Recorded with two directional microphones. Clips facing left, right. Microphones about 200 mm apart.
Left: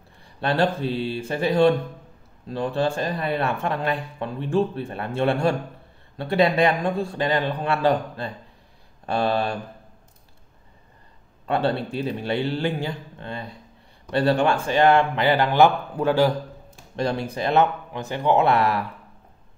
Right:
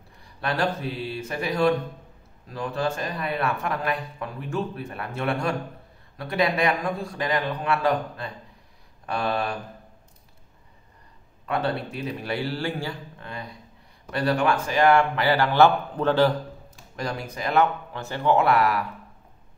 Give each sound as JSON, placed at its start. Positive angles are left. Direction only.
{"t": 0.2, "sound": "speech", "side_deg": 30}
{"t": 11.4, "sound": "speech", "side_deg": 30}
{"t": 16.9, "sound": "speech", "side_deg": 30}